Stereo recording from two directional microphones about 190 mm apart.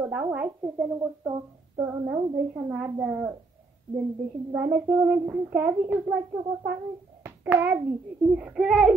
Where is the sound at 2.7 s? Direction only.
5° right (ahead or behind).